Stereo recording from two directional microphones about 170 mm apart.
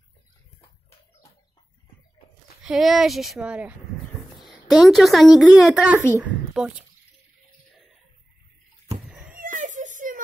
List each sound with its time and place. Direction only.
2.6 s a woman's voice: centre (ahead or behind)
9.4 s whimper: 50° right (ahead or behind)